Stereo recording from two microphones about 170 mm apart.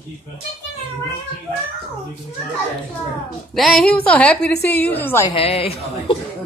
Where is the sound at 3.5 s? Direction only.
Centre (ahead or behind).